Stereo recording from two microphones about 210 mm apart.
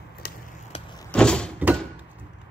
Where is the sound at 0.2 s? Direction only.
45° left (ahead or behind).